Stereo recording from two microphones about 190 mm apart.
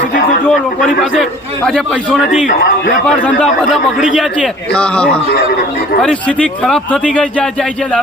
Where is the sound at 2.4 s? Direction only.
45° left (ahead or behind).